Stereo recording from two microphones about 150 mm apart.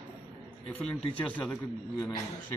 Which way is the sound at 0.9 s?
10° left (ahead or behind).